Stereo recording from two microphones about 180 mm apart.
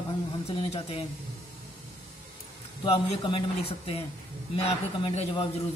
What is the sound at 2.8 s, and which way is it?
A man's voice, 30° left (ahead or behind).